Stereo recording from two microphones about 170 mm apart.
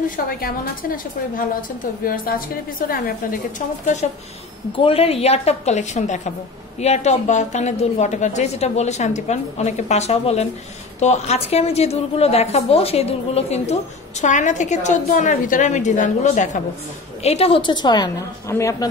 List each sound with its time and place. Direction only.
0.1 s a woman's voice: 55° left (ahead or behind)
4.7 s a woman's voice: 35° left (ahead or behind); by 18.9 s 20° left (ahead or behind)